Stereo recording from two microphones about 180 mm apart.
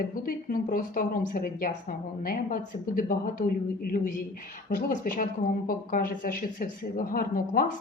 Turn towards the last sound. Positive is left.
turn(degrees=50)  # may be behind; listen again after turning